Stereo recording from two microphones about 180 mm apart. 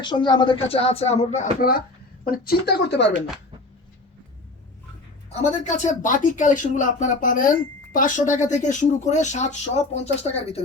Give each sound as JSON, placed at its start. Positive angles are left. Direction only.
{"t": 0.0, "sound": "speech", "side_deg": 25}
{"t": 2.2, "sound": "speech", "side_deg": 55}
{"t": 5.3, "sound": "speech", "side_deg": 40}